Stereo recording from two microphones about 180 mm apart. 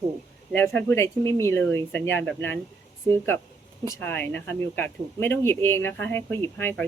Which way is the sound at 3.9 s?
15° left (ahead or behind).